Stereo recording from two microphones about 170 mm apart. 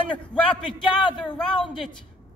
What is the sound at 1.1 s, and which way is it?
Speech, 30° left (ahead or behind).